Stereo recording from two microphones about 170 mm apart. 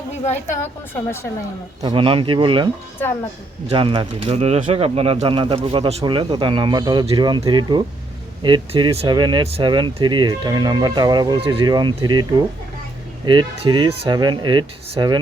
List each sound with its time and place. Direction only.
0.3 s a woman's voice: 45° left (ahead or behind)
0.9 s speech: 15° left (ahead or behind)
1.8 s speech: 30° right (ahead or behind)
3.7 s speech: 30° right (ahead or behind)
13.2 s speech: 25° right (ahead or behind)